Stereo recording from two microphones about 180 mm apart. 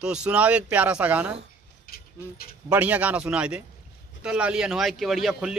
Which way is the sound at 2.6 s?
10° right (ahead or behind).